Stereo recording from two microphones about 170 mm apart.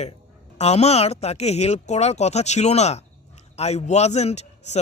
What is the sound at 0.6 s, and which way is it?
Speech, 40° left (ahead or behind).